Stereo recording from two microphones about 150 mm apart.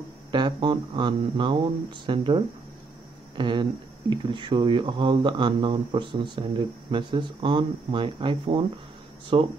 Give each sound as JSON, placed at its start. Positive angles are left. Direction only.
{"t": 0.3, "sound": "speech", "side_deg": -30}